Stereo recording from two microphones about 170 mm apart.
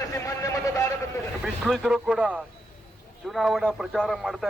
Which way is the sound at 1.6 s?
Centre (ahead or behind).